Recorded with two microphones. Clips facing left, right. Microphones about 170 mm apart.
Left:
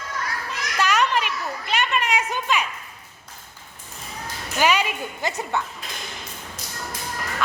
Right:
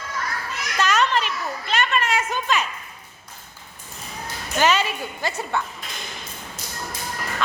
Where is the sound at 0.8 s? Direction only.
15° left (ahead or behind).